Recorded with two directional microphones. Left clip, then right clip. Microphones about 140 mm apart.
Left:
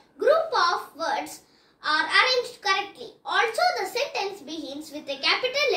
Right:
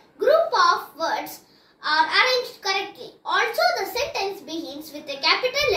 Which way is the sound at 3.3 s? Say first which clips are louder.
Right 2 dB; 20° left (ahead or behind).